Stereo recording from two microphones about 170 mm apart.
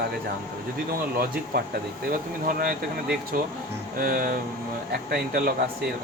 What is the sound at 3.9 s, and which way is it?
Speech, 60° right (ahead or behind).